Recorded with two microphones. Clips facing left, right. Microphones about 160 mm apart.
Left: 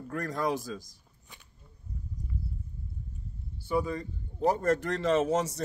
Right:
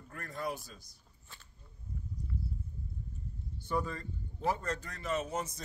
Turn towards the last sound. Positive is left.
turn(degrees=85)